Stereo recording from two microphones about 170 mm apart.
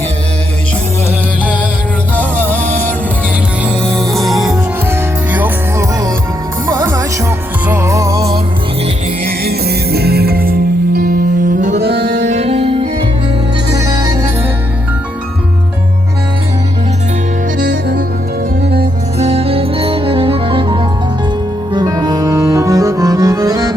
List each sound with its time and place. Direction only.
2.1 s music: 10° left (ahead or behind)
4.9 s music: 10° right (ahead or behind)
6.7 s music: 15° right (ahead or behind)
9.2 s music: 65° right (ahead or behind); by 11.8 s 50° right (ahead or behind)
11.8 s music: 70° right (ahead or behind)
12.3 s music: 40° right (ahead or behind)
13.7 s music: 20° right (ahead or behind)
17.6 s music: 60° right (ahead or behind)
19.2 s music: 35° right (ahead or behind); by 23.7 s 20° right (ahead or behind)